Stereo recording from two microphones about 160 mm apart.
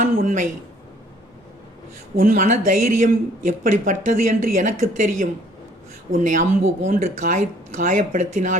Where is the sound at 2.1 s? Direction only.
55° right (ahead or behind).